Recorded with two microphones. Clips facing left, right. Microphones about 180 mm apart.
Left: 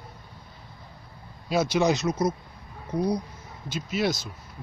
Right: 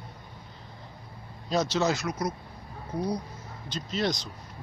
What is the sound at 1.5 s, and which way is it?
Speech, 10° left (ahead or behind).